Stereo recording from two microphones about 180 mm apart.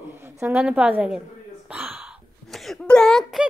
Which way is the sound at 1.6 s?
5° right (ahead or behind).